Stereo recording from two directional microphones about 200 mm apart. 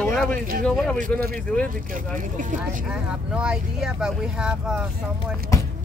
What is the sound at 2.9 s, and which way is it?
Speech, 5° right (ahead or behind).